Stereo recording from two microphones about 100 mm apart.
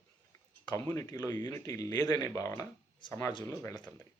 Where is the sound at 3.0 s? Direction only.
50° left (ahead or behind).